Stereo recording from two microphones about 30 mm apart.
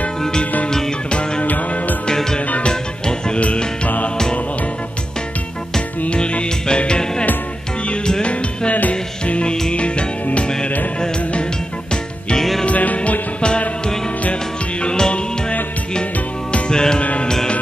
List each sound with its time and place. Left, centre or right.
0.7 s music: left
2.7 s music: left
6.0 s music: left
8.2 s music: left
12.4 s music: centre
12.6 s music: left
14.8 s music: left
16.7 s music: left